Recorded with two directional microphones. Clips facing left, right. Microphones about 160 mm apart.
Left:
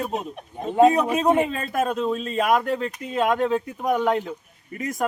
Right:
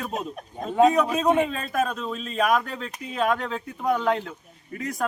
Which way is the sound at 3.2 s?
20° left (ahead or behind).